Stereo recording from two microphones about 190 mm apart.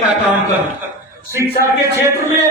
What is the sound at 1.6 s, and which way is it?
Speech, 15° right (ahead or behind).